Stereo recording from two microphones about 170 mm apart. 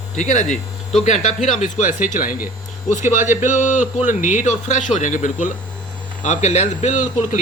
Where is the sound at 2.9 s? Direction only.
45° left (ahead or behind).